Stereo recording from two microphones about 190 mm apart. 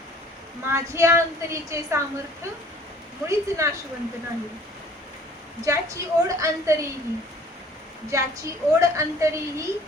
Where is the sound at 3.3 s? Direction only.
15° right (ahead or behind).